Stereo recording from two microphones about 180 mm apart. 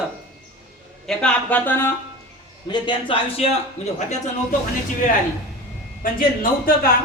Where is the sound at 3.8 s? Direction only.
40° left (ahead or behind).